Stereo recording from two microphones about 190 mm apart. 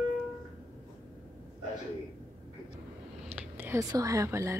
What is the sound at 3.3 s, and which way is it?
Whispering, 10° right (ahead or behind).